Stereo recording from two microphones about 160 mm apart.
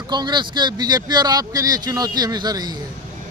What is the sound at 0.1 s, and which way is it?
Speech, 25° right (ahead or behind).